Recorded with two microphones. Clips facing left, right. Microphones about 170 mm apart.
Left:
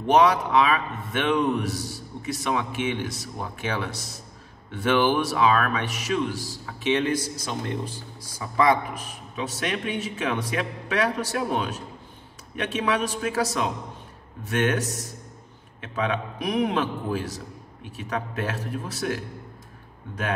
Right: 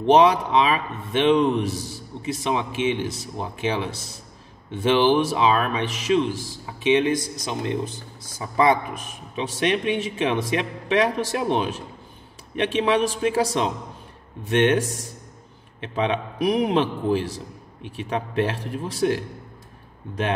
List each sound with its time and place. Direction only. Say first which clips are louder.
0.0 s a man's voice: right 3 dB; 25° right (ahead or behind)